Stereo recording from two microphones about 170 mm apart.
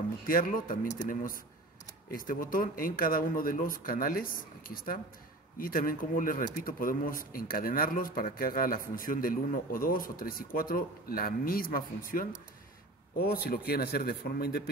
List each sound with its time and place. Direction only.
0.3 s speech: 55° left (ahead or behind)